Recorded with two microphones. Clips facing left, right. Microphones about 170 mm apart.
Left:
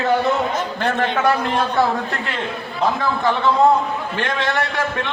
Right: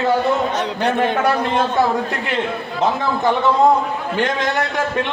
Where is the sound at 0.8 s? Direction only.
15° right (ahead or behind).